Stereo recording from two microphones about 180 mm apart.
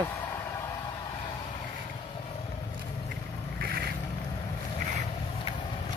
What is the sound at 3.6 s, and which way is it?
Vehicle, 60° right (ahead or behind).